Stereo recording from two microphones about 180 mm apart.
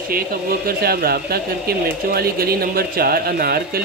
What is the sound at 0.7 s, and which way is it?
Speech, 60° right (ahead or behind).